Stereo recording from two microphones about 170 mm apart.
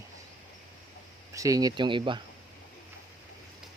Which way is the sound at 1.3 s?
20° right (ahead or behind).